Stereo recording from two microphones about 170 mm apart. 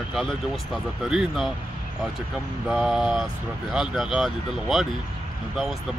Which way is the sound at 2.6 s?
5° right (ahead or behind).